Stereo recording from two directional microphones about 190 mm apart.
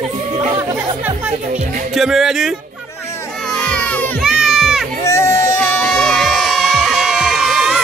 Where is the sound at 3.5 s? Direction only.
5° left (ahead or behind).